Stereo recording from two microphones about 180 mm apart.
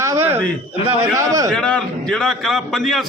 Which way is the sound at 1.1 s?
20° right (ahead or behind).